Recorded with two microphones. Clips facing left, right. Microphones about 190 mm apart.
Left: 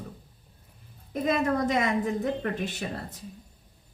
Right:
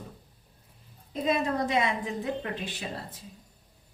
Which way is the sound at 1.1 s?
50° left (ahead or behind).